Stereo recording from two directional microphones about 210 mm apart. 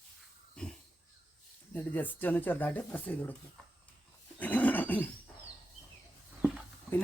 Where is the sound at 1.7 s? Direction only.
10° left (ahead or behind).